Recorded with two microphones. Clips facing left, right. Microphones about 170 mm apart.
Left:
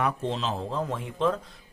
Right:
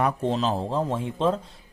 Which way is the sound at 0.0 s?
40° right (ahead or behind).